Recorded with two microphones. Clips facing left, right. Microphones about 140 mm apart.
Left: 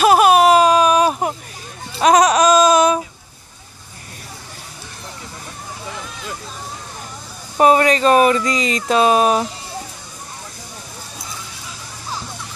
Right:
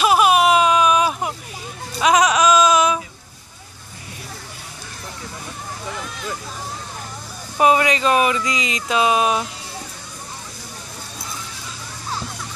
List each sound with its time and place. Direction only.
0.0 s baby cry: 45° left (ahead or behind)
2.0 s a sound: 40° left (ahead or behind)
7.5 s speech: 40° left (ahead or behind)